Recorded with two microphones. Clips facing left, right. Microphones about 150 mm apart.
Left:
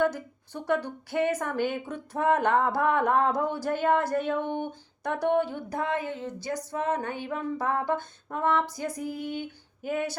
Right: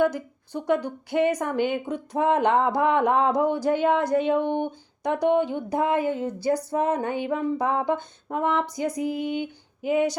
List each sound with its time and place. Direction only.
0.0 s speech: 10° right (ahead or behind)
6.1 s female singing: 35° right (ahead or behind); by 10.2 s 15° right (ahead or behind)